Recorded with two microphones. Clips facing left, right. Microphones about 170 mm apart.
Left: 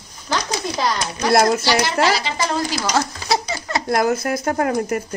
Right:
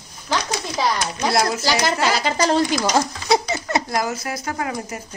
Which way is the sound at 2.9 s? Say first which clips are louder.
Right 1 dB; 20° right (ahead or behind).